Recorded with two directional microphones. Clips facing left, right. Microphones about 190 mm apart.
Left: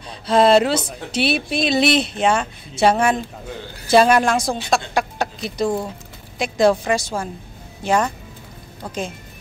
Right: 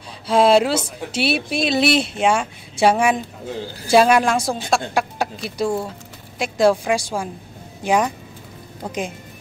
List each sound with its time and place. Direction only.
0.3 s speech: 10° right (ahead or behind)